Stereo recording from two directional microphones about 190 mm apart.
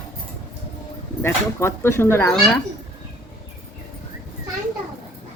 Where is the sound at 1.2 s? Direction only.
15° left (ahead or behind).